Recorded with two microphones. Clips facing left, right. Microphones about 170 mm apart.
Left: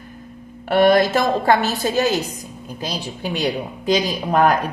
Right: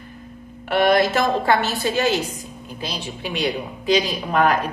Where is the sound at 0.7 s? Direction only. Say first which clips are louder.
Left 3 dB; 40° left (ahead or behind).